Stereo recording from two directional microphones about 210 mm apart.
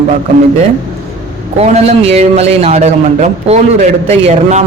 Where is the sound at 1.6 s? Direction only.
30° right (ahead or behind).